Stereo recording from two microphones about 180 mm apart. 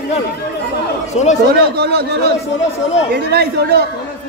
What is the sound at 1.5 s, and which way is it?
Speech, 65° right (ahead or behind).